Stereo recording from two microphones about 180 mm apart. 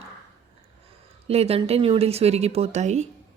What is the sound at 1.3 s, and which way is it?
Speech, 35° right (ahead or behind).